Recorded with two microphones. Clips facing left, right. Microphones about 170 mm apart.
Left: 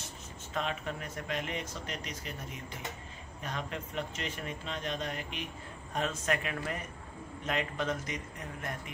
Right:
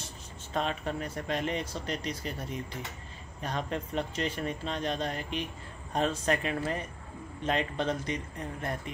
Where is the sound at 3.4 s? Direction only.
35° right (ahead or behind).